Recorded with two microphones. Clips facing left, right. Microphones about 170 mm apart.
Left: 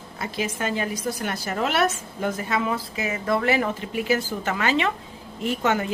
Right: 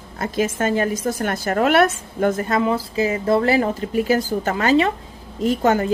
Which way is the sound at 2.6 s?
30° right (ahead or behind).